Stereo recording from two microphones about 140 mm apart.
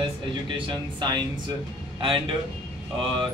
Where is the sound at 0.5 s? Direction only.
35° right (ahead or behind).